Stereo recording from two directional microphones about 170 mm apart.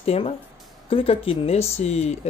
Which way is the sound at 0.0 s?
35° left (ahead or behind).